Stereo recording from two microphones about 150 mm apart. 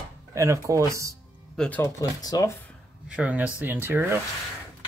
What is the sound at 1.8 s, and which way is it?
Speech, 25° left (ahead or behind).